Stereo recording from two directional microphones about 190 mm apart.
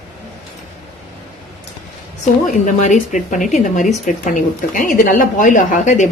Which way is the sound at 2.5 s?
40° left (ahead or behind).